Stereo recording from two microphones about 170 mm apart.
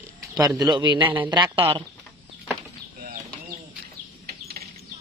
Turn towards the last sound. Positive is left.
turn(degrees=-65)  # may be behind; listen again after turning